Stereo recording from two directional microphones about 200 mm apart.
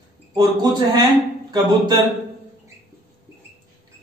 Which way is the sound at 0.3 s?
20° right (ahead or behind).